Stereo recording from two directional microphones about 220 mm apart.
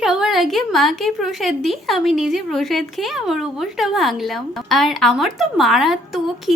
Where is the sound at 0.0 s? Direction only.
5° right (ahead or behind).